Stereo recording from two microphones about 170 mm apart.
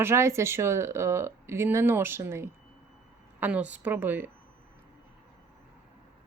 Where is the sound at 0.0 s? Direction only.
15° right (ahead or behind).